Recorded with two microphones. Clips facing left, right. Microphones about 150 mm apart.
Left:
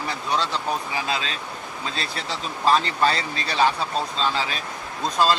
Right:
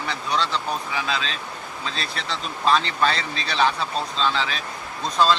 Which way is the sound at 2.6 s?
35° left (ahead or behind).